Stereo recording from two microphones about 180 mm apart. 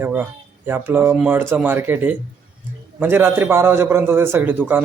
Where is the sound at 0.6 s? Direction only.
10° right (ahead or behind).